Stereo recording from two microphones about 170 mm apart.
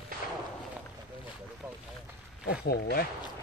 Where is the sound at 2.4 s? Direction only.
70° left (ahead or behind).